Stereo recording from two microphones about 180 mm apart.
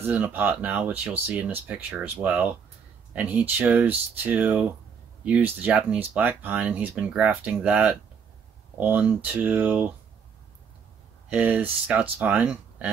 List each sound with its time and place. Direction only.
0.0 s speech: 10° right (ahead or behind)
11.2 s speech: 5° right (ahead or behind)